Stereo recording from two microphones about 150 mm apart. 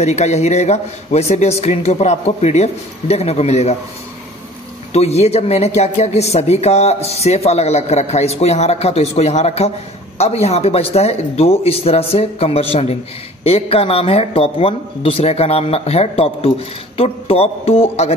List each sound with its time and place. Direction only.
0.0 s speech: 45° left (ahead or behind)
4.9 s a man's voice: 45° left (ahead or behind)